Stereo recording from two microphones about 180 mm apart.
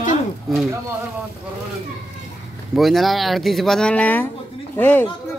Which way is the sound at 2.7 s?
Centre (ahead or behind).